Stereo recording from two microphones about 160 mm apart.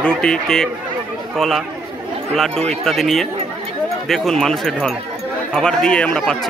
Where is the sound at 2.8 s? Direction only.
Centre (ahead or behind).